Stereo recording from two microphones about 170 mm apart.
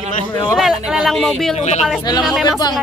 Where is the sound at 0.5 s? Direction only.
Centre (ahead or behind).